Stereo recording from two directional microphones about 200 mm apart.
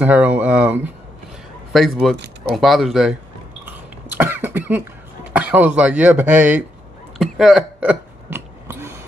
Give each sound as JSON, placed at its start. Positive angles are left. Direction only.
{"t": 0.0, "sound": "speech", "side_deg": -10}
{"t": 2.1, "sound": "speech", "side_deg": -55}
{"t": 2.5, "sound": "speech", "side_deg": 0}
{"t": 3.6, "sound": "cough", "side_deg": -10}
{"t": 5.3, "sound": "speech", "side_deg": -10}
{"t": 7.2, "sound": "hiccup", "side_deg": 0}